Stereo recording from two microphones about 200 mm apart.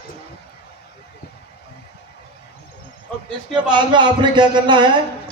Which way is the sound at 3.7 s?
25° right (ahead or behind).